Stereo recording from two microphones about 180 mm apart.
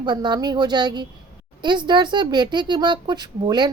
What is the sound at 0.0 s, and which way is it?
A woman's voice, 25° right (ahead or behind).